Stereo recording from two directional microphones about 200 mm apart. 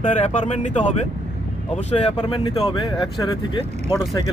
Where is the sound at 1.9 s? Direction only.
25° left (ahead or behind).